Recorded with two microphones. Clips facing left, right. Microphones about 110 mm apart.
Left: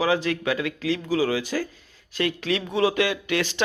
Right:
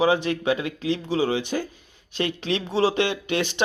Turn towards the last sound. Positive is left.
turn(degrees=-20)  # may be behind; listen again after turning